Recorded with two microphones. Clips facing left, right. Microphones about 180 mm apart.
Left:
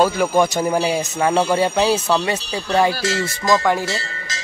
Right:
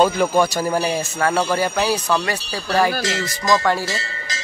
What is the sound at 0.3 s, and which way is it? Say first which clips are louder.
Speech: left 1 dB; 20° left (ahead or behind).